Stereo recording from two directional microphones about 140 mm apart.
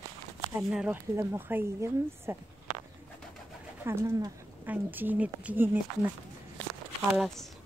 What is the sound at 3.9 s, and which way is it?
Speech, 20° right (ahead or behind).